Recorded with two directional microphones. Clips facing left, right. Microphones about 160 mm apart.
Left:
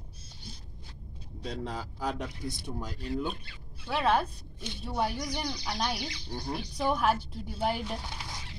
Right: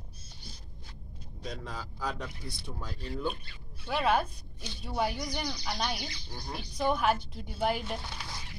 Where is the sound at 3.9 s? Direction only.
5° right (ahead or behind).